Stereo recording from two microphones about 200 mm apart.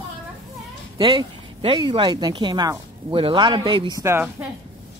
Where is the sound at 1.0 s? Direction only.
25° right (ahead or behind).